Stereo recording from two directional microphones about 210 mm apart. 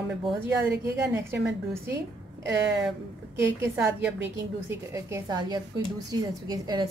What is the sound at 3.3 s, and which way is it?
A woman's voice, 15° right (ahead or behind).